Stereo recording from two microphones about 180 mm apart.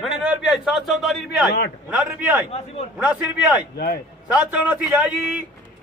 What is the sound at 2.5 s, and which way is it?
Speech, 35° left (ahead or behind).